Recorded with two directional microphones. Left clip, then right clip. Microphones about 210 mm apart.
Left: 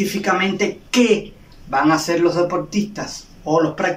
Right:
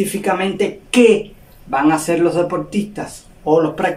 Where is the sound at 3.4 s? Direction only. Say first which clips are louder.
Right 3 dB; 15° right (ahead or behind).